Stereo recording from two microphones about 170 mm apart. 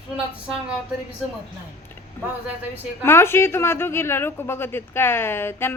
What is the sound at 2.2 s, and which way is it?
Speech, 15° left (ahead or behind).